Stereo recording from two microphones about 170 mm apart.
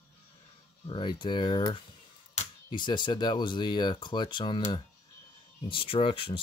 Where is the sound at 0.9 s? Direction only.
30° left (ahead or behind).